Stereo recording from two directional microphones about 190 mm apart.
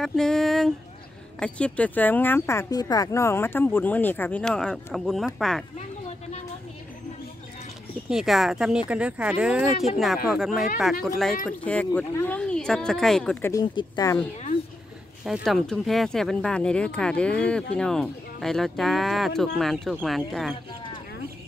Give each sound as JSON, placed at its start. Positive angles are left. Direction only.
{"t": 0.0, "sound": "speech", "side_deg": 0}
{"t": 5.8, "sound": "a sound", "side_deg": 35}
{"t": 8.1, "sound": "speech", "side_deg": 0}
{"t": 13.5, "sound": "speech", "side_deg": 20}
{"t": 15.2, "sound": "speech", "side_deg": 0}